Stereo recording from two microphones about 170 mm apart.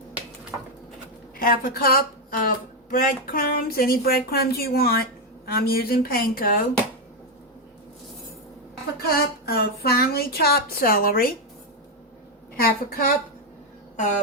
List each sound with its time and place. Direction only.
1.4 s speech: 60° left (ahead or behind)
9.0 s speech: 65° left (ahead or behind)
12.6 s speech: 60° left (ahead or behind)
13.9 s a sound: 45° left (ahead or behind)